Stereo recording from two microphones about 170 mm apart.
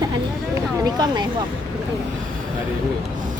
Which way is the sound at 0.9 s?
25° right (ahead or behind).